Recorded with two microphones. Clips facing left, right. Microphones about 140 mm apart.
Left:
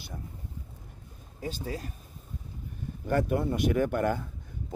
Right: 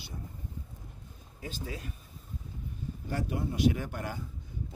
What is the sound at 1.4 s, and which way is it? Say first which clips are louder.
Speech: left 5 dB; 40° left (ahead or behind).